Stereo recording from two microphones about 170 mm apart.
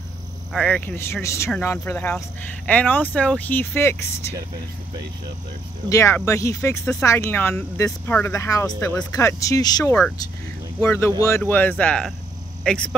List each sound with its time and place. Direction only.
0.5 s speech: 5° left (ahead or behind)
5.9 s speech: 15° left (ahead or behind)